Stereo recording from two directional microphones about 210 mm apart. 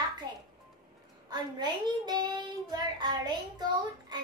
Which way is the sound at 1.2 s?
20° right (ahead or behind).